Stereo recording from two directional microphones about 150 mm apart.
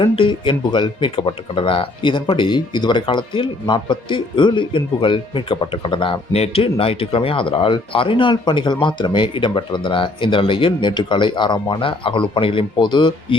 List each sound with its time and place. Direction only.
0.0 s speech: 35° left (ahead or behind)